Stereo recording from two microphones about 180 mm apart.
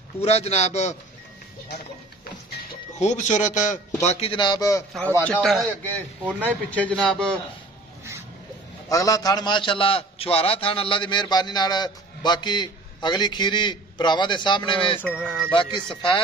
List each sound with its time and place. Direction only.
0.2 s a man's voice: 35° left (ahead or behind)
3.0 s a man's voice: 40° left (ahead or behind); by 4.8 s 20° left (ahead or behind)
5.1 s a man's voice: 5° left (ahead or behind)
8.8 s a man's voice: 20° left (ahead or behind)
15.1 s a man's voice: centre (ahead or behind)
15.5 s a man's voice: 25° left (ahead or behind)